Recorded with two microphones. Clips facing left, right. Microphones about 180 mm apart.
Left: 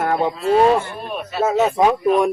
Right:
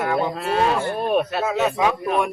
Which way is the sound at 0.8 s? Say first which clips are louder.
Right 7 dB; 50° right (ahead or behind).